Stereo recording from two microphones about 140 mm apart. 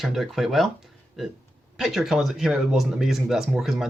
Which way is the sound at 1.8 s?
Centre (ahead or behind).